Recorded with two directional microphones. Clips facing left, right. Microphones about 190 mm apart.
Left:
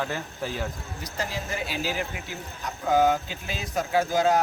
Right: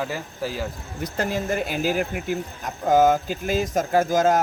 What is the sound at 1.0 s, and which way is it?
Speech, 55° right (ahead or behind).